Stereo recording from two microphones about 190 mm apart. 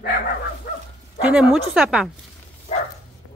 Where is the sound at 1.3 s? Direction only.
5° right (ahead or behind).